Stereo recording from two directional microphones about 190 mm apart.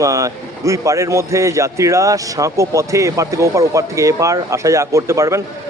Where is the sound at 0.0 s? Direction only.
15° right (ahead or behind).